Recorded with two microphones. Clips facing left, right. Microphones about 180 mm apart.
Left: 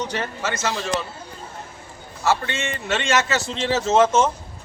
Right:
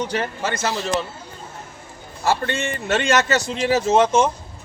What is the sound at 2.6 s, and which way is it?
Speech, 40° right (ahead or behind).